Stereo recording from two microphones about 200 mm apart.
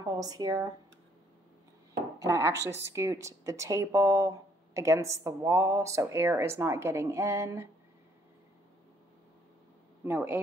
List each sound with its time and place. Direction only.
0.0 s speech: 20° right (ahead or behind)
2.1 s a woman's voice: 15° right (ahead or behind)
10.0 s a woman's voice: 10° right (ahead or behind)